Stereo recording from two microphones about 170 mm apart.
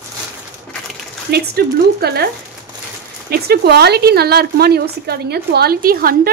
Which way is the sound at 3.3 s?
70° right (ahead or behind).